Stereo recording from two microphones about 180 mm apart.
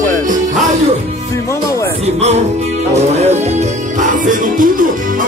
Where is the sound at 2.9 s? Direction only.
35° right (ahead or behind).